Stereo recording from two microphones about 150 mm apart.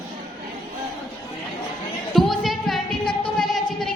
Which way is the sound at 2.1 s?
Centre (ahead or behind).